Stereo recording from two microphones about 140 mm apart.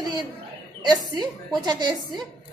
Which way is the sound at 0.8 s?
30° right (ahead or behind).